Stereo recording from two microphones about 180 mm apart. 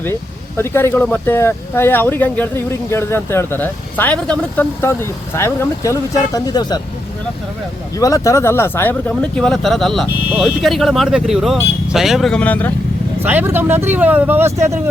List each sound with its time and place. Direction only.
0.0 s speech: 15° left (ahead or behind)
7.9 s speech: 20° left (ahead or behind)
13.2 s speech: 10° right (ahead or behind)